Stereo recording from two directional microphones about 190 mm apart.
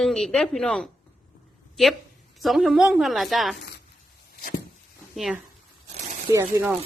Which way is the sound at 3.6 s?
60° left (ahead or behind).